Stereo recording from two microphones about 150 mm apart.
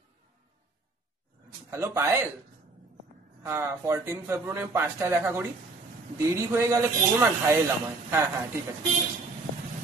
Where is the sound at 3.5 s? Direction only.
15° right (ahead or behind).